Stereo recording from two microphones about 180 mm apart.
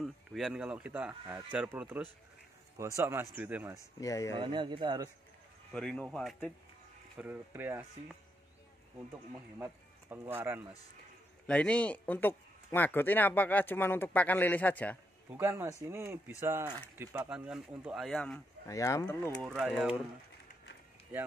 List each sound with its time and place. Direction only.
0.0 s speech: centre (ahead or behind)
4.0 s speech: 20° left (ahead or behind)
4.4 s speech: 25° right (ahead or behind)
5.7 s speech: 5° left (ahead or behind)
7.2 s speech: 10° right (ahead or behind)
9.6 s speech: 15° right (ahead or behind)
11.4 s speech: 5° left (ahead or behind)
15.3 s speech: 15° right (ahead or behind)
17.3 s speech: 5° right (ahead or behind)
18.7 s speech: 20° left (ahead or behind)
19.4 s speech: centre (ahead or behind)